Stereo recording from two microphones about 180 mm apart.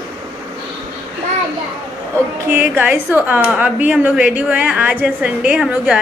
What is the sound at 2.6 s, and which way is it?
A woman's voice, 10° right (ahead or behind).